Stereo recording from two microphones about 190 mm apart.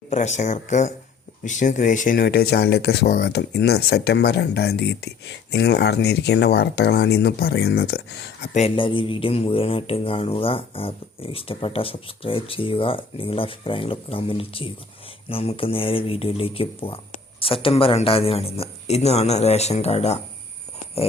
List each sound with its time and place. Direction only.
0.1 s speech: 40° left (ahead or behind); by 8.4 s 60° left (ahead or behind)
8.5 s speech: 30° left (ahead or behind)